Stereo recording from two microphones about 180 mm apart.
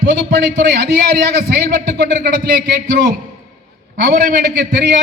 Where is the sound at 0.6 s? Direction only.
65° right (ahead or behind).